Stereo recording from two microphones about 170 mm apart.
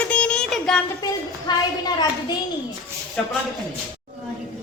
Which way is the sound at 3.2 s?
5° left (ahead or behind).